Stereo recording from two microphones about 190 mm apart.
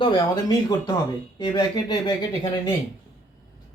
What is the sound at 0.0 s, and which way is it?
A man's voice, 20° left (ahead or behind).